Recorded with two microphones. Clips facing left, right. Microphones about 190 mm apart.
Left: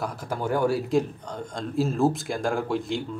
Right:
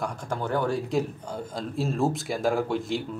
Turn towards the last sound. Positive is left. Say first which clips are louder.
# even
turn(degrees=0)  # may be behind; listen again after turning